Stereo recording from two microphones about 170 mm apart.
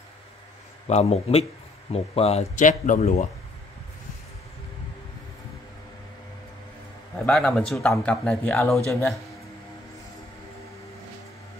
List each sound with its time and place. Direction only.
0.8 s speech: 40° left (ahead or behind)
7.2 s a man's voice: 5° left (ahead or behind)